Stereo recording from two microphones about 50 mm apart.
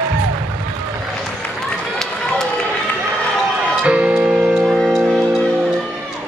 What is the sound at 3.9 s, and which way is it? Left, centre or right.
Music, right.